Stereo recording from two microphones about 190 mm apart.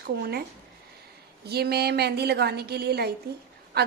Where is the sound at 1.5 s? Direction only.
55° right (ahead or behind).